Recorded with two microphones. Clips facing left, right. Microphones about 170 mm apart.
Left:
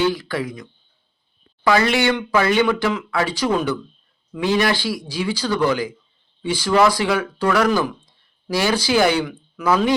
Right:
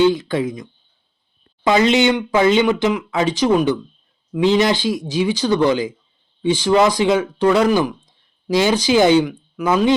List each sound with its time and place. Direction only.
0.0 s speech: 20° right (ahead or behind)